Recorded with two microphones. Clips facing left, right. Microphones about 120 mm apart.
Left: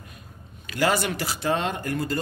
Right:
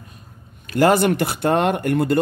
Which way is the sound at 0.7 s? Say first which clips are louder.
Right 8 dB; 50° right (ahead or behind).